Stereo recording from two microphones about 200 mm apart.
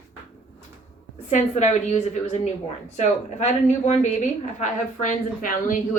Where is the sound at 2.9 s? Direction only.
35° left (ahead or behind).